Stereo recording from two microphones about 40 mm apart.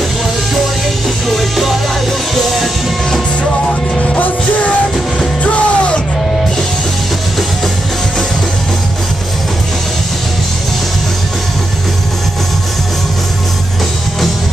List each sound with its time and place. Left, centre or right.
5.4 s music: left